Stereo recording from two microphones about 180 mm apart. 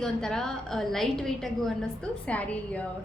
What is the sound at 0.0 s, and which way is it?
A woman's voice, 5° left (ahead or behind).